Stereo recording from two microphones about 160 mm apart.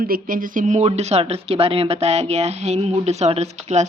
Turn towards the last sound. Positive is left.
turn(degrees=-45)  # may be behind; listen again after turning